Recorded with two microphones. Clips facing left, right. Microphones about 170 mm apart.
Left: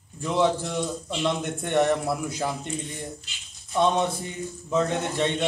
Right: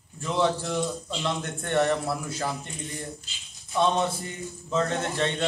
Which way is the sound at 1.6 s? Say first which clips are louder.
Left 2 dB; 15° left (ahead or behind).